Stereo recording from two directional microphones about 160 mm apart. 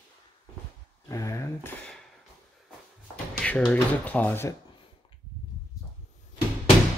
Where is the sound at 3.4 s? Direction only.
10° left (ahead or behind).